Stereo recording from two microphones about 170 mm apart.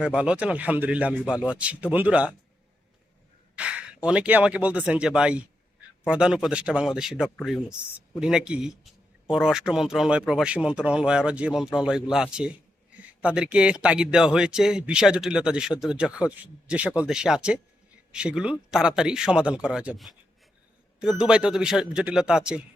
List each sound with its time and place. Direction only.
0.0 s a man's voice: 5° right (ahead or behind)
3.5 s a man's voice: 5° right (ahead or behind)